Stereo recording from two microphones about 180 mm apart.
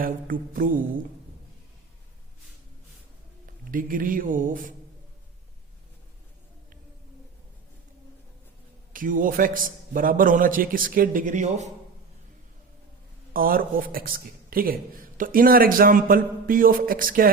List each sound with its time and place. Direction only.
0.0 s a man's voice: 50° right (ahead or behind)
3.4 s a man's voice: 50° right (ahead or behind)
8.9 s a man's voice: 50° right (ahead or behind)
13.3 s a man's voice: 55° right (ahead or behind)